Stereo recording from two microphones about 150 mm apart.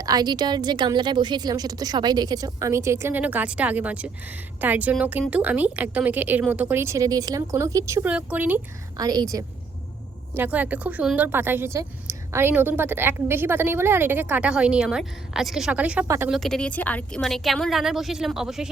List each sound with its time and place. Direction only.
0.0 s a woman's voice: 25° right (ahead or behind)
8.0 s a woman's voice: 10° right (ahead or behind)
9.0 s a woman's voice: 25° right (ahead or behind)
10.3 s a woman's voice: 10° right (ahead or behind)
16.3 s a woman's voice: centre (ahead or behind)